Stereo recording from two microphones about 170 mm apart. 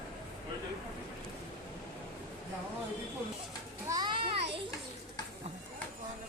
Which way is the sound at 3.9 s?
25° right (ahead or behind).